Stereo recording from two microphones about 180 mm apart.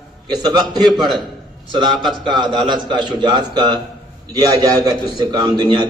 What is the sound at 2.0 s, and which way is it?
Speech, centre (ahead or behind).